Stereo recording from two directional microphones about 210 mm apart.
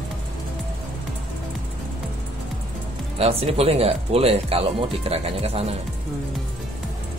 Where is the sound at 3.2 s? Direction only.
30° right (ahead or behind).